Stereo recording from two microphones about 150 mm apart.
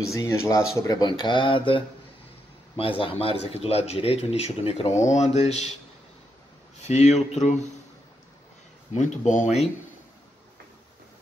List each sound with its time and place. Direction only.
0.1 s speech: 20° left (ahead or behind); by 5.7 s 45° left (ahead or behind)
6.8 s speech: 50° left (ahead or behind)
8.9 s speech: 55° left (ahead or behind)